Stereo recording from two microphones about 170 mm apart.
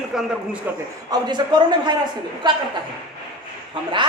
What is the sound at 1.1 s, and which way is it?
Speech, 25° right (ahead or behind).